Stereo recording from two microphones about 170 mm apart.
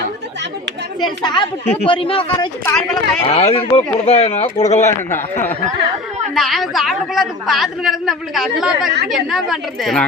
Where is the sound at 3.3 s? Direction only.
35° left (ahead or behind).